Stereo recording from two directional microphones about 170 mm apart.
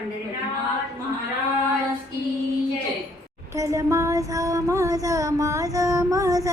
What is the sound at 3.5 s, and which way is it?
Child singing, 20° right (ahead or behind).